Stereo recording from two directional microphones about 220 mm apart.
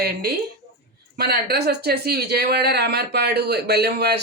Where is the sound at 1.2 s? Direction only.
45° right (ahead or behind).